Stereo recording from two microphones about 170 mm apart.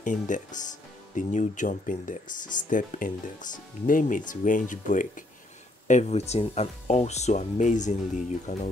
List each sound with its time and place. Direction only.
0.0 s speech: 50° left (ahead or behind)